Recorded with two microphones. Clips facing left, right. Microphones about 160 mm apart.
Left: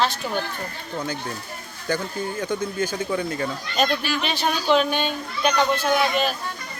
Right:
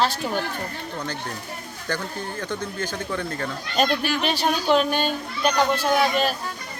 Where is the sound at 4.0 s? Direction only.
55° right (ahead or behind).